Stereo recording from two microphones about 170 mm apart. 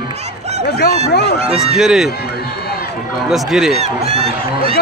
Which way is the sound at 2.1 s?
70° left (ahead or behind).